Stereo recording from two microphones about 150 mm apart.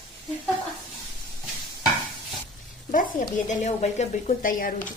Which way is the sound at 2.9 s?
60° left (ahead or behind).